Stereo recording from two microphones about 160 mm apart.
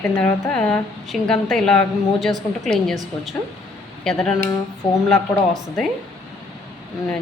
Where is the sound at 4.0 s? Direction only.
5° left (ahead or behind).